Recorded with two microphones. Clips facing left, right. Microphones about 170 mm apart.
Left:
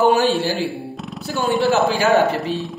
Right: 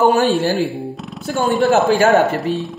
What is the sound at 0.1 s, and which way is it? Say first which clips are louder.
Speech: right 2 dB; 50° right (ahead or behind).